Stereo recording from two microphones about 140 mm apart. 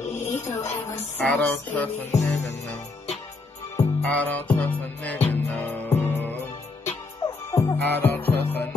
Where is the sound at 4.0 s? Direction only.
10° left (ahead or behind).